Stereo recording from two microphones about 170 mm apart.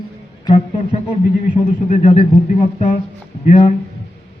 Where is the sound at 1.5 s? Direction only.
45° left (ahead or behind).